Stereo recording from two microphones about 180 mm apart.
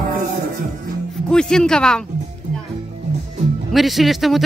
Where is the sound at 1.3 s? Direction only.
5° left (ahead or behind).